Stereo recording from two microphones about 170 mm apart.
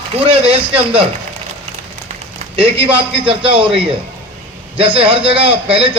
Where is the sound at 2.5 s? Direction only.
35° right (ahead or behind).